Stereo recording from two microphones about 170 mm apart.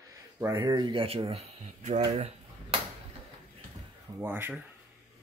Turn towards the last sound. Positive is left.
turn(degrees=-10)  # may be behind; listen again after turning